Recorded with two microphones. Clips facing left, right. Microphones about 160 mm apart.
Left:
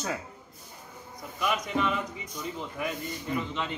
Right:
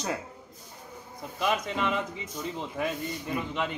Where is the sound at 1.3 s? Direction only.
25° right (ahead or behind).